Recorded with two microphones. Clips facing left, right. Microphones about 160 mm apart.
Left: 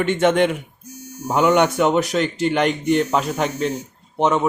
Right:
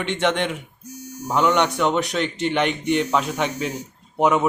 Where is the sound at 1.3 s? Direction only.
5° left (ahead or behind).